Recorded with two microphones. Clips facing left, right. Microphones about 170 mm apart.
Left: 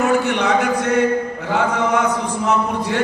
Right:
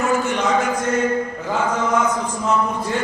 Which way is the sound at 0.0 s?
65° left (ahead or behind).